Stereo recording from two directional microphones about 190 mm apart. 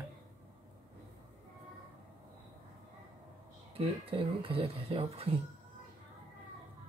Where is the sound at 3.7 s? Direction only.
30° right (ahead or behind).